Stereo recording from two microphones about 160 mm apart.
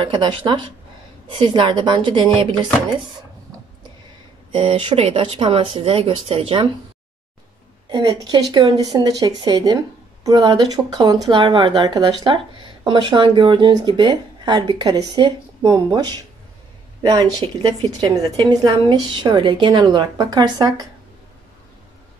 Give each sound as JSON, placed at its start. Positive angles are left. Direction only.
{"t": 0.0, "sound": "speech", "side_deg": -30}
{"t": 4.5, "sound": "speech", "side_deg": -35}
{"t": 7.9, "sound": "a woman's voice", "side_deg": -25}
{"t": 17.1, "sound": "a woman's voice", "side_deg": -25}